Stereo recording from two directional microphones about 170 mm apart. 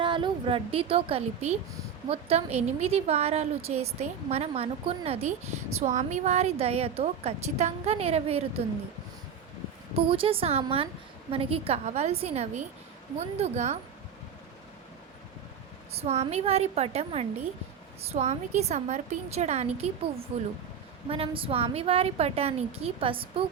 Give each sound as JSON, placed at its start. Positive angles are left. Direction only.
{"t": 0.0, "sound": "a woman's voice", "side_deg": -30}
{"t": 5.8, "sound": "a woman's voice", "side_deg": -45}
{"t": 9.9, "sound": "a woman's voice", "side_deg": -35}
{"t": 15.9, "sound": "a woman's voice", "side_deg": -40}